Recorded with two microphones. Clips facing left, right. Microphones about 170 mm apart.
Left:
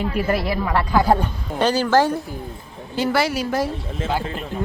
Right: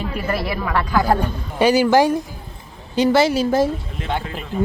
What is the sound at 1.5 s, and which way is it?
A woman's voice, 10° right (ahead or behind).